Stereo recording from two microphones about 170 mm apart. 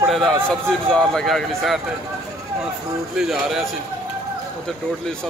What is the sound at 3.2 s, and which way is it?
Speech, 5° right (ahead or behind).